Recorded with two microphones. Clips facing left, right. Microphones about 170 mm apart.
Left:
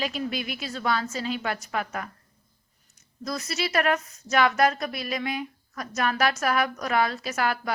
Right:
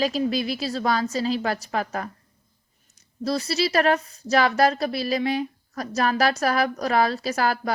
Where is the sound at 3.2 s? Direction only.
30° right (ahead or behind).